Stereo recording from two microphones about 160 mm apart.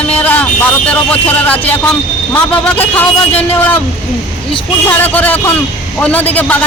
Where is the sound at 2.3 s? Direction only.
10° left (ahead or behind).